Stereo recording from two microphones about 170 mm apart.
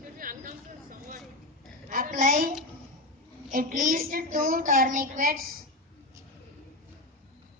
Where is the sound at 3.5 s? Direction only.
55° right (ahead or behind).